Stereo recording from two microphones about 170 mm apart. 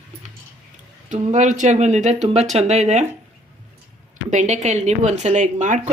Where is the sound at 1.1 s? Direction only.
45° right (ahead or behind).